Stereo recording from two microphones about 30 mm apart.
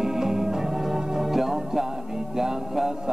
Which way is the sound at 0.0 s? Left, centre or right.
Centre.